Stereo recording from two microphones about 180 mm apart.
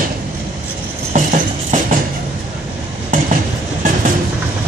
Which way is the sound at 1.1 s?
40° right (ahead or behind).